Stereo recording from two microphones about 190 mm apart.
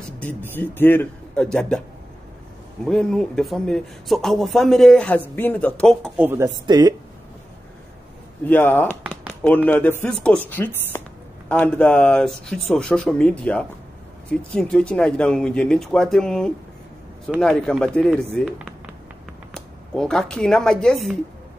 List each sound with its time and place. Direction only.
0.2 s speech: 10° left (ahead or behind)
2.8 s speech: centre (ahead or behind)
6.1 s speech: 10° right (ahead or behind)
8.5 s speech: 10° left (ahead or behind)
19.5 s speech: 5° left (ahead or behind)